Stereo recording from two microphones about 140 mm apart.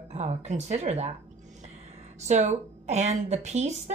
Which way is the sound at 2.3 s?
55° right (ahead or behind).